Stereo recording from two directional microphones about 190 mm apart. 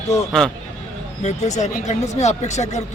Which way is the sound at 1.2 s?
35° left (ahead or behind).